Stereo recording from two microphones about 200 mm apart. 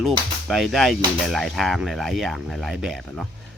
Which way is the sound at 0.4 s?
Centre (ahead or behind).